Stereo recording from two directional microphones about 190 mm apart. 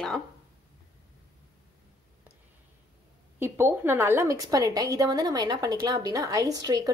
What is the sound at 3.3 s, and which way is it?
A woman's voice, 10° right (ahead or behind).